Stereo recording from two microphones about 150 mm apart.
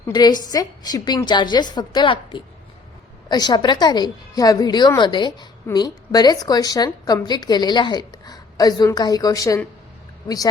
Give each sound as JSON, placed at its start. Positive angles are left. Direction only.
{"t": 0.1, "sound": "a woman's voice", "side_deg": 25}